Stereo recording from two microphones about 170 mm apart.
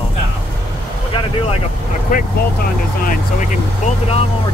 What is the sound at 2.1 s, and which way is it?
Speech, 50° left (ahead or behind).